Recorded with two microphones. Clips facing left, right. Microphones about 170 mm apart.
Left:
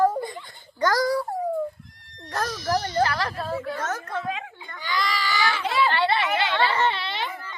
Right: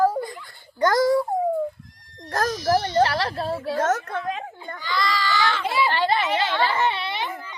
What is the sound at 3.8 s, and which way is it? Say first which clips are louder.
A woman's voice: right 6 dB; 50° right (ahead or behind).